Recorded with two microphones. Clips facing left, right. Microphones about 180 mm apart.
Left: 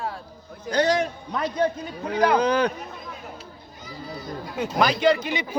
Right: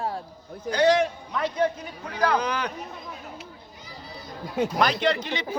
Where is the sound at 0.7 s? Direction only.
40° left (ahead or behind).